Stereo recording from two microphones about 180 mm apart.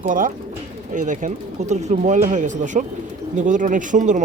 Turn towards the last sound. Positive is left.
turn(degrees=-40)  # may be behind; listen again after turning